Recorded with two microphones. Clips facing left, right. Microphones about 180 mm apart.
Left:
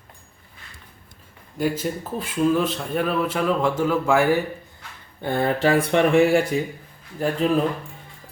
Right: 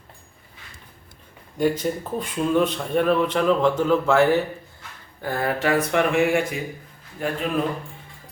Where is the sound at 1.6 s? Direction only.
5° left (ahead or behind).